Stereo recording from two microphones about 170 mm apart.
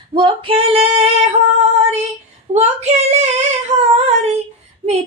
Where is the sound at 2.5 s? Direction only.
40° right (ahead or behind).